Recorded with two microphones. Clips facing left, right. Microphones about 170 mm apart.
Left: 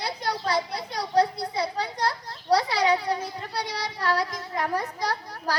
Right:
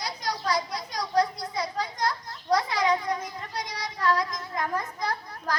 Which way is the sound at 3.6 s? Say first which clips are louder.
Left 1 dB; 65° left (ahead or behind).